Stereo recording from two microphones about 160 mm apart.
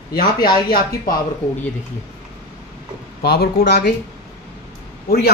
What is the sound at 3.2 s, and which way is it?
Speech, 75° left (ahead or behind).